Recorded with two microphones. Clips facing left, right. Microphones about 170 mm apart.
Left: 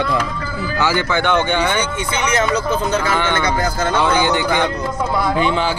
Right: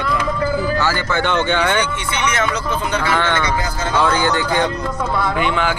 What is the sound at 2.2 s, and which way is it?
Speech, 40° left (ahead or behind).